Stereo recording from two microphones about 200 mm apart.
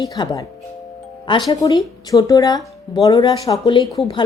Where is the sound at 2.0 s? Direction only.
20° left (ahead or behind).